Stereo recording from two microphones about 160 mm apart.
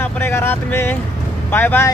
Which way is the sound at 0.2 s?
15° left (ahead or behind).